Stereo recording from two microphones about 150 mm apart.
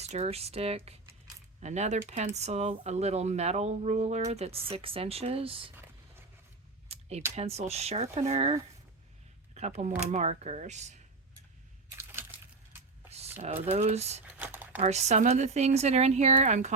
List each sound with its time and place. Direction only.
0.0 s speech: 45° right (ahead or behind)
6.8 s a sound: 40° right (ahead or behind)
7.3 s speech: 45° right (ahead or behind)
9.6 s speech: 50° right (ahead or behind)
11.9 s a sound: 15° right (ahead or behind)
13.1 s speech: 45° right (ahead or behind)
14.3 s computer keyboard: 10° right (ahead or behind)
14.8 s speech: 50° right (ahead or behind)